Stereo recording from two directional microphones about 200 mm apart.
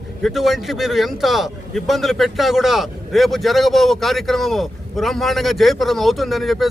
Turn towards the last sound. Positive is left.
turn(degrees=0)  # may be behind; listen again after turning